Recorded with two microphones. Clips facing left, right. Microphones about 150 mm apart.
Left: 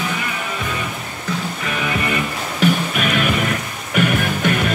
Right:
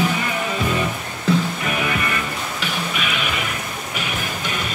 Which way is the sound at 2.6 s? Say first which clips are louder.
Left 11 dB; 50° left (ahead or behind).